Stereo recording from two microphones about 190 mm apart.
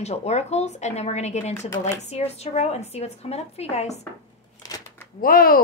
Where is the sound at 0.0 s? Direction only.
35° left (ahead or behind).